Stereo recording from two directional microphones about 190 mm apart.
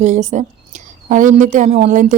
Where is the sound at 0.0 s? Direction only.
40° right (ahead or behind).